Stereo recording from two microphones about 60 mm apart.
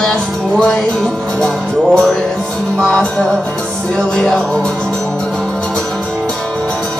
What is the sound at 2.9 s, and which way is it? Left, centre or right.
Music, centre.